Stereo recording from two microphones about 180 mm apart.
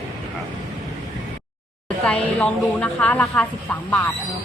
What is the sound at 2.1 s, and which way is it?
Speech, 5° left (ahead or behind).